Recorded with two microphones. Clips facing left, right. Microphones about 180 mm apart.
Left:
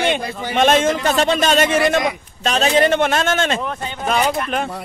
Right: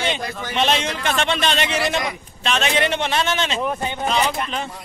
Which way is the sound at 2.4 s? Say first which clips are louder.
Left 5 dB; 40° left (ahead or behind).